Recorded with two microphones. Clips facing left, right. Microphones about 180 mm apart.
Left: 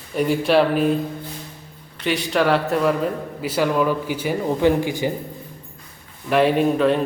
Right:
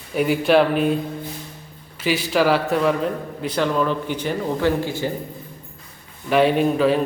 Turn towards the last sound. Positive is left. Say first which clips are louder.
# even
turn(degrees=0)  # may be behind; listen again after turning